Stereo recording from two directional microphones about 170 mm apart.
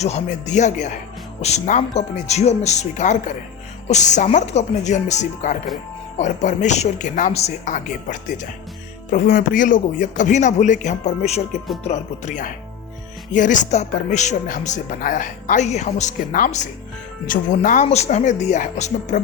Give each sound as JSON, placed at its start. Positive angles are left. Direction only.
{"t": 0.0, "sound": "speech", "side_deg": 45}